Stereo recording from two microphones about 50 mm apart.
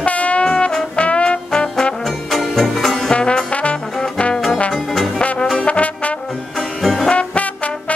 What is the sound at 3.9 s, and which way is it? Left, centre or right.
Trombone, centre.